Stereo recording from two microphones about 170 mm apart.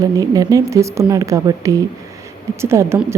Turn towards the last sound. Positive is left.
turn(degrees=-15)  # may be behind; listen again after turning